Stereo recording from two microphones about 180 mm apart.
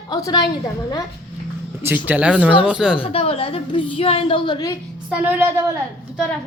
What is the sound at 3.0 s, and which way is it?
A woman's voice, 35° left (ahead or behind).